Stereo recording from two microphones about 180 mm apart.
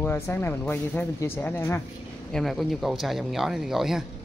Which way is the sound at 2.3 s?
Centre (ahead or behind).